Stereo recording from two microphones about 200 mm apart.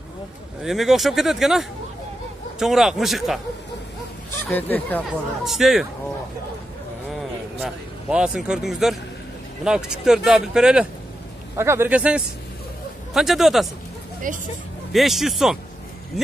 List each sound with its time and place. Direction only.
0.7 s speech: centre (ahead or behind)
4.5 s speech: 10° left (ahead or behind)
5.4 s speech: centre (ahead or behind)
7.1 s a sound: centre (ahead or behind)
9.7 s a man's voice: 5° right (ahead or behind)
14.3 s speech: 40° right (ahead or behind)
14.9 s speech: centre (ahead or behind)